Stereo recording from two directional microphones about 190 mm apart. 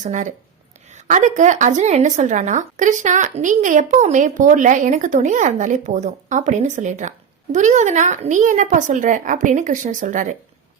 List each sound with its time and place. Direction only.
0.0 s speech: 40° right (ahead or behind)